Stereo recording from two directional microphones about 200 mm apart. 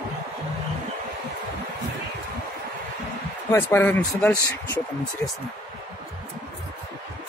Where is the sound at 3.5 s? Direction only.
10° left (ahead or behind).